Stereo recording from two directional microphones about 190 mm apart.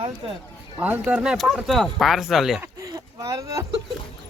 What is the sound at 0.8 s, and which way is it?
Speech, 10° right (ahead or behind).